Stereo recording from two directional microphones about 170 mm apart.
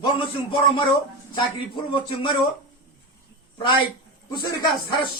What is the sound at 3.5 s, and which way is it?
Speech, 30° left (ahead or behind).